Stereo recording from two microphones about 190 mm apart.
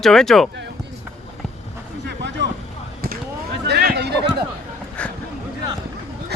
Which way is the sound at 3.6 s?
60° right (ahead or behind).